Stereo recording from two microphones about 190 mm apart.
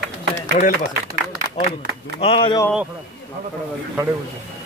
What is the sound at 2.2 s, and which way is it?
Speech, 30° left (ahead or behind).